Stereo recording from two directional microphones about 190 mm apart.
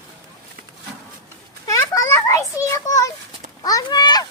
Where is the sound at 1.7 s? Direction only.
15° left (ahead or behind).